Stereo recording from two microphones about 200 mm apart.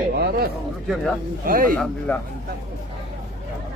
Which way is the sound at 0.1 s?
50° right (ahead or behind).